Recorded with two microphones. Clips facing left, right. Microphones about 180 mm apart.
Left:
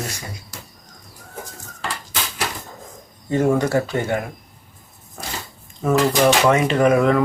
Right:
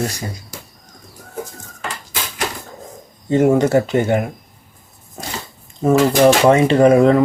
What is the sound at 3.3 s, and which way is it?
Speech, 25° right (ahead or behind).